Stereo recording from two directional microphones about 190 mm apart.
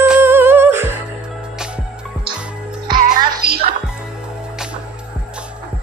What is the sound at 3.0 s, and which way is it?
Music, 55° right (ahead or behind).